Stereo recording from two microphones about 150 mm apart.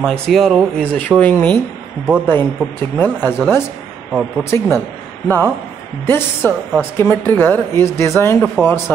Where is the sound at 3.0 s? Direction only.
15° left (ahead or behind).